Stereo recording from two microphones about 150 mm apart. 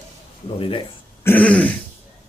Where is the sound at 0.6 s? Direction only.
35° left (ahead or behind).